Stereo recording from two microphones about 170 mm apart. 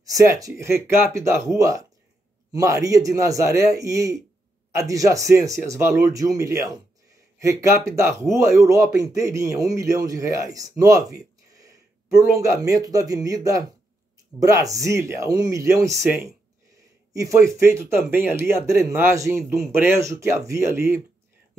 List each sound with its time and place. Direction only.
0.0 s speech: 20° right (ahead or behind)
11.1 s a sound: 20° right (ahead or behind)
12.4 s speech: 20° right (ahead or behind)